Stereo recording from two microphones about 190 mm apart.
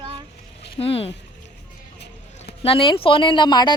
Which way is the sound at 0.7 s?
30° left (ahead or behind).